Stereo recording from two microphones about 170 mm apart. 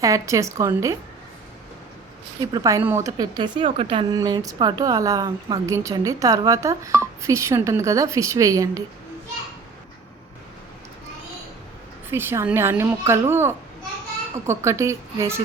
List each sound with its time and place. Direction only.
0.0 s a woman's voice: 20° right (ahead or behind)
2.4 s a woman's voice: 20° right (ahead or behind)
4.1 s a woman's voice: 20° right (ahead or behind)
12.1 s a woman's voice: 15° right (ahead or behind)